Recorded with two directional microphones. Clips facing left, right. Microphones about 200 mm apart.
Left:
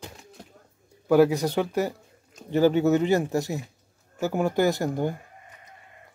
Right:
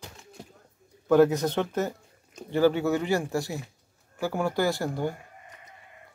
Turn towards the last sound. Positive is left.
turn(degrees=20)  # may be behind; listen again after turning